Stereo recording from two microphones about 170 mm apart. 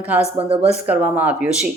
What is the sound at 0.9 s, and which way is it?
Speech, 10° right (ahead or behind).